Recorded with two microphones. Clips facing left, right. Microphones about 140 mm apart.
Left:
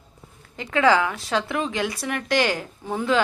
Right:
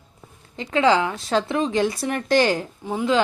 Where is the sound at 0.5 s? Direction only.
25° right (ahead or behind).